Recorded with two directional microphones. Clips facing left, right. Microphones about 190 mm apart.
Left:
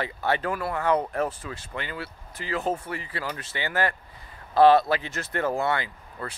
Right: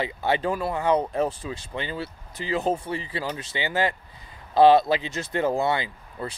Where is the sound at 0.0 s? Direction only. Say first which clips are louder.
Right 2 dB; 20° right (ahead or behind).